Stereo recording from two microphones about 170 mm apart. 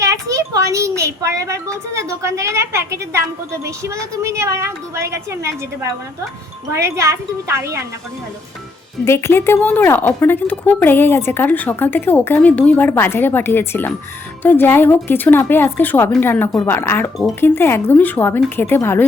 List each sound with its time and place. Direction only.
0.0 s a woman's voice: 20° right (ahead or behind)
9.0 s speech: 15° left (ahead or behind)